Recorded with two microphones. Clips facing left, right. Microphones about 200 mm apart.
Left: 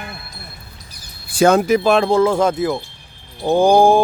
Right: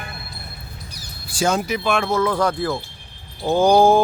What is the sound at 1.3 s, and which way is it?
Speech, 55° left (ahead or behind).